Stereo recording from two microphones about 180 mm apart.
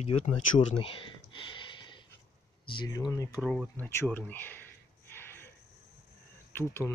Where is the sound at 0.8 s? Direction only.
30° left (ahead or behind).